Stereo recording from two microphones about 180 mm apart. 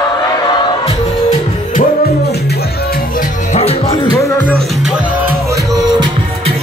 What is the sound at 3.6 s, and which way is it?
Music, 35° left (ahead or behind).